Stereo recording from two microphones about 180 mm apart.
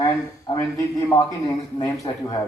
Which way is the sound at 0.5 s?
15° left (ahead or behind).